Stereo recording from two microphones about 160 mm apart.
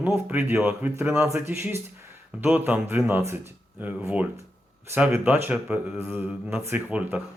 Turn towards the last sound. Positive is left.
turn(degrees=-10)  # may be behind; listen again after turning